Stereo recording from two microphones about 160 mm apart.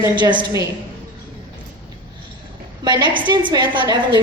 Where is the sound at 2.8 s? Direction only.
25° right (ahead or behind).